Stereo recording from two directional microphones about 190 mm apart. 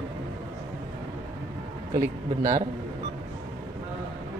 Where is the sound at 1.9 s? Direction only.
20° right (ahead or behind).